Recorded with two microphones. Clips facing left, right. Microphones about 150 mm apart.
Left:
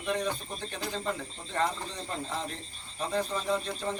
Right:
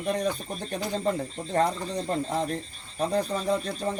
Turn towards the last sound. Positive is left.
turn(degrees=-40)  # may be behind; listen again after turning